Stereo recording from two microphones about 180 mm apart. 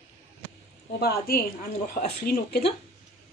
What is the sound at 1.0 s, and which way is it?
Speech, 55° left (ahead or behind).